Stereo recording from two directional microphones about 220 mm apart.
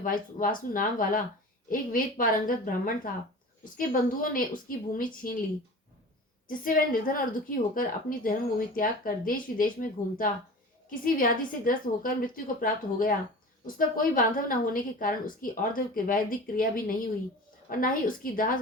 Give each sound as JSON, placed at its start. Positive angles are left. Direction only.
{"t": 0.0, "sound": "a woman's voice", "side_deg": 40}
{"t": 6.5, "sound": "a woman's voice", "side_deg": 40}